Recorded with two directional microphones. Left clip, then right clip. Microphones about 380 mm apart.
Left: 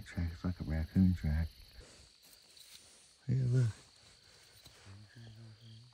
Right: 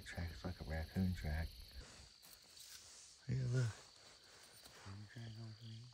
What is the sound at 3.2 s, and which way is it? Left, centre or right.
Speech, left.